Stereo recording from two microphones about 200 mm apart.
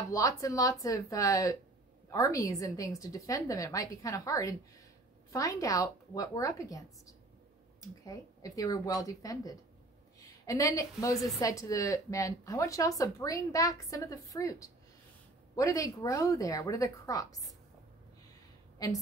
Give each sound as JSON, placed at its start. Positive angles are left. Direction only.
{"t": 0.1, "sound": "a woman's voice", "side_deg": 15}